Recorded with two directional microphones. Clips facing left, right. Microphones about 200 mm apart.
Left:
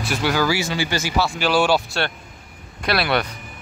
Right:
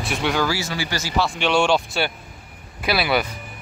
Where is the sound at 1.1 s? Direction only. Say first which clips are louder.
Even; 5° left (ahead or behind).